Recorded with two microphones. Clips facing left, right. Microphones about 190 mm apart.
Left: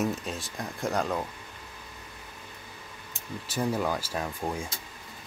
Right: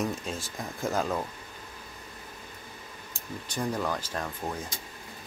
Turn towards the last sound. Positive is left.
turn(degrees=10)  # may be behind; listen again after turning